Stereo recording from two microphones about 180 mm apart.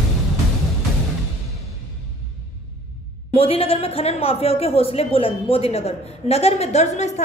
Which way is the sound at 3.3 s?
30° left (ahead or behind).